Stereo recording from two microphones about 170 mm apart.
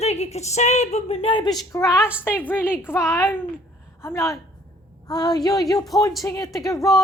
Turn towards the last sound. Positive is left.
turn(degrees=20)  # may be behind; listen again after turning